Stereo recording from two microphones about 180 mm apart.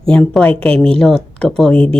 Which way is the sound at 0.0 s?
5° left (ahead or behind).